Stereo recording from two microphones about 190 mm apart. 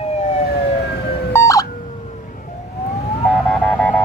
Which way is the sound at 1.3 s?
15° left (ahead or behind).